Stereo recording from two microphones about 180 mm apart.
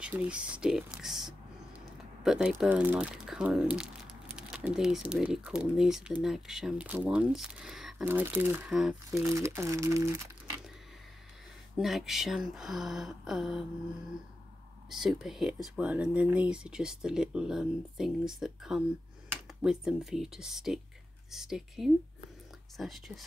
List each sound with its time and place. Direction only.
0.0 s speech: 5° right (ahead or behind)
9.1 s speech: 15° right (ahead or behind)
11.7 s speech: centre (ahead or behind)
14.9 s speech: centre (ahead or behind)